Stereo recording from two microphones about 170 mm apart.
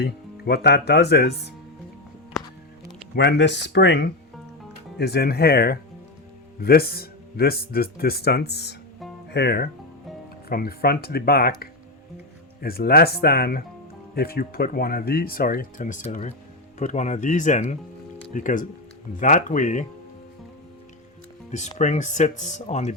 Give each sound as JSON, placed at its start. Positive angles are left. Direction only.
{"t": 0.0, "sound": "speech", "side_deg": 70}
{"t": 3.2, "sound": "speech", "side_deg": 90}
{"t": 4.9, "sound": "speech", "side_deg": 70}
{"t": 10.5, "sound": "speech", "side_deg": 65}
{"t": 21.5, "sound": "speech", "side_deg": 45}